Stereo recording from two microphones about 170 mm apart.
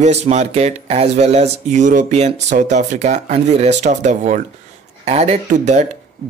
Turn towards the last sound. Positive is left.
turn(degrees=-45)  # may be behind; listen again after turning